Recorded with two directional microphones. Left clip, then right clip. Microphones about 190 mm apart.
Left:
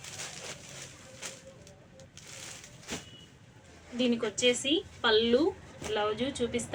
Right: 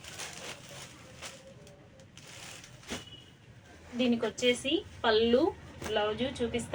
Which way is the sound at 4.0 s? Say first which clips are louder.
Left 1 dB; 20° left (ahead or behind).